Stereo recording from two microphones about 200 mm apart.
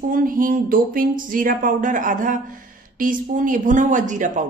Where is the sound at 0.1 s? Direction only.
45° right (ahead or behind).